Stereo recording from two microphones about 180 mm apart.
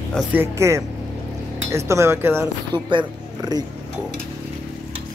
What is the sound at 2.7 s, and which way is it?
Speech, 25° right (ahead or behind).